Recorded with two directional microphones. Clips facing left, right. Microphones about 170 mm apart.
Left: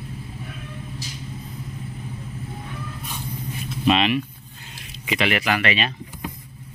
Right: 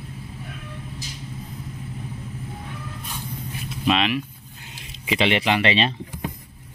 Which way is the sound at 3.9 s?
Centre (ahead or behind).